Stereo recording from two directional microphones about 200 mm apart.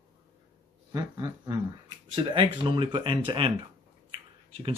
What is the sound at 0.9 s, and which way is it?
Speech, 20° right (ahead or behind).